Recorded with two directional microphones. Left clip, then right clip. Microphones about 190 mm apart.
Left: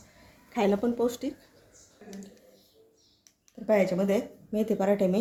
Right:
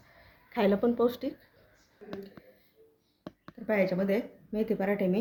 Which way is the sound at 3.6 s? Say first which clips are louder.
Left 3 dB; 20° left (ahead or behind).